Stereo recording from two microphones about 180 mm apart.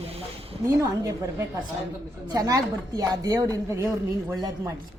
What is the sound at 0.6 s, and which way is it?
Speech, 15° right (ahead or behind).